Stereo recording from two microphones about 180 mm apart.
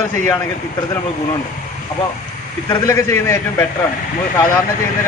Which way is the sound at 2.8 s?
15° left (ahead or behind).